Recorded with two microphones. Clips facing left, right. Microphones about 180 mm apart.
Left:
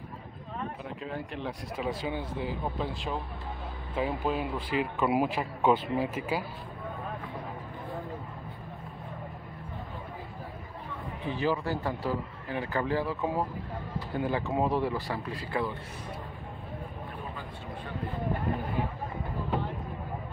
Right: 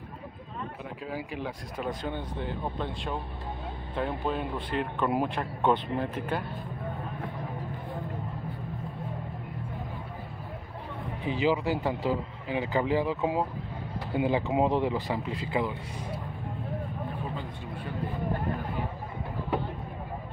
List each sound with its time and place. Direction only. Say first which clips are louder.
1.0 s speech: right 1 dB; 5° right (ahead or behind)
11.2 s speech: right 3 dB; 15° right (ahead or behind)